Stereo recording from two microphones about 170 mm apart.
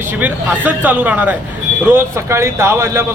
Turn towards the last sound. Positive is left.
turn(degrees=-15)  # may be behind; listen again after turning